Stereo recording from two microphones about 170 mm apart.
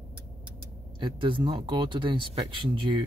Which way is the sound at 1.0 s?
30° right (ahead or behind).